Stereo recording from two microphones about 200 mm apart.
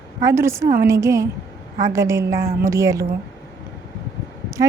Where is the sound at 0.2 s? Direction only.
15° right (ahead or behind).